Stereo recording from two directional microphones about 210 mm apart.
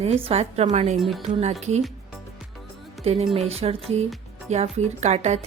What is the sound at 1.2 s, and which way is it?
Speech, 30° right (ahead or behind).